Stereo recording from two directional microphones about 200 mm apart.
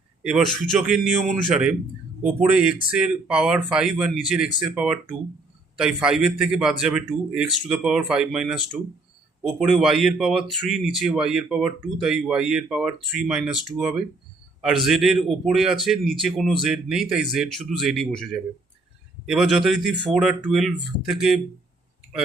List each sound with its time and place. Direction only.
0.2 s speech: 5° right (ahead or behind)